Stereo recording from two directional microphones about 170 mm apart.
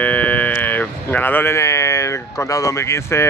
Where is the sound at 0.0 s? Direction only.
10° left (ahead or behind).